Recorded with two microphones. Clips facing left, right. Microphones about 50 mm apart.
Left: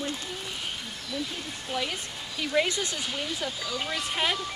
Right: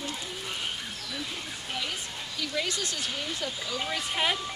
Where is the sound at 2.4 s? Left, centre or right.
Left.